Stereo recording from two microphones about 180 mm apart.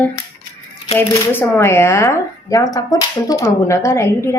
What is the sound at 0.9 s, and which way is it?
A woman's voice, 10° left (ahead or behind).